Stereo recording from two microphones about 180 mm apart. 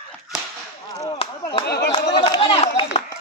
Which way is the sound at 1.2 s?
35° left (ahead or behind).